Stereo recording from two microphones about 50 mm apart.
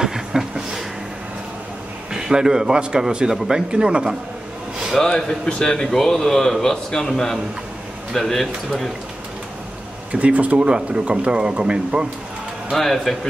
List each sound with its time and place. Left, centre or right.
0.0 s a sound: centre
2.1 s speech: centre
4.9 s a man's voice: centre
10.1 s speech: right
12.7 s a man's voice: centre